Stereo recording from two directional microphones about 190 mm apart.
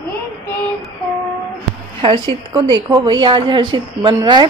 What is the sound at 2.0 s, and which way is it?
A woman's voice, 25° right (ahead or behind).